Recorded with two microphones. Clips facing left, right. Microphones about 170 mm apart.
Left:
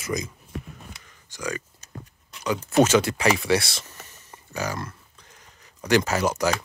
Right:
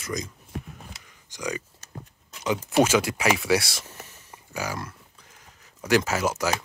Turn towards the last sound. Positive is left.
turn(degrees=-5)  # may be behind; listen again after turning